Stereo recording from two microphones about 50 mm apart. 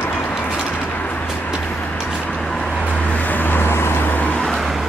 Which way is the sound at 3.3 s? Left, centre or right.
Left.